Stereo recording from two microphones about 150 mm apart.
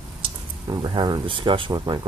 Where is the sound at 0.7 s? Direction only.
30° right (ahead or behind).